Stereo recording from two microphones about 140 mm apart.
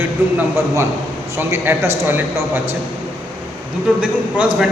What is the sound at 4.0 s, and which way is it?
Speech, 10° right (ahead or behind).